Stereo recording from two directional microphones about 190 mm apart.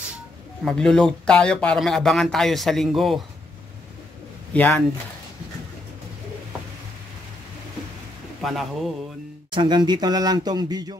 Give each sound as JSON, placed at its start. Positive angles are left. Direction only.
{"t": 0.7, "sound": "speech", "side_deg": 5}
{"t": 4.6, "sound": "speech", "side_deg": 10}
{"t": 8.4, "sound": "speech", "side_deg": 0}
{"t": 9.5, "sound": "speech", "side_deg": -25}